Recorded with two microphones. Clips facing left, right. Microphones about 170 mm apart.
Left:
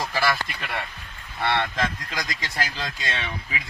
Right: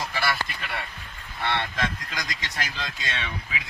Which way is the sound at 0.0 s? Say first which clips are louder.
Left 4 dB; 40° left (ahead or behind).